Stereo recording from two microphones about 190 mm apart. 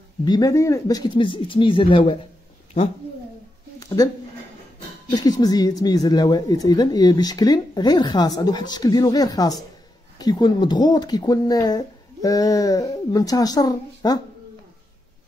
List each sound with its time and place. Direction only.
0.2 s speech: 20° left (ahead or behind)
3.8 s speech: 20° left (ahead or behind)
5.1 s speech: 20° left (ahead or behind)